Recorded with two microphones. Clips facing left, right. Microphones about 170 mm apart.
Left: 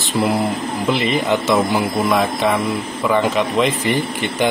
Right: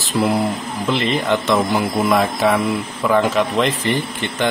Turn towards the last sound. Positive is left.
turn(degrees=10)  # may be behind; listen again after turning